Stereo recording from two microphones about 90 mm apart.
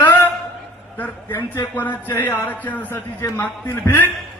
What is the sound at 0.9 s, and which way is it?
A man's voice, 20° left (ahead or behind).